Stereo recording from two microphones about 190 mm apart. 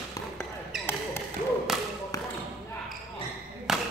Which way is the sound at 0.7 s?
Centre (ahead or behind).